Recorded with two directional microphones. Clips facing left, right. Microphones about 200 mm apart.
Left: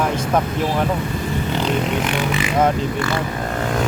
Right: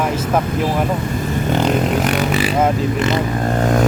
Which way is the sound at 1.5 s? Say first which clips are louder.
Right 4 dB; 45° right (ahead or behind).